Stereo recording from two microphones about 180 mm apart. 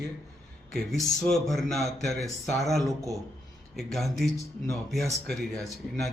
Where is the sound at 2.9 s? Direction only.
20° right (ahead or behind).